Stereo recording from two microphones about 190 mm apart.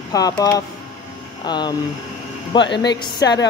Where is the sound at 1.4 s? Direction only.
20° left (ahead or behind).